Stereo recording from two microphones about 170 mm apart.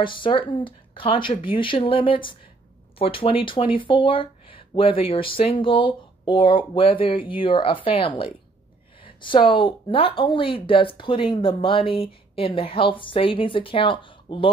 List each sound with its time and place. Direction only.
0.0 s speech: 30° left (ahead or behind)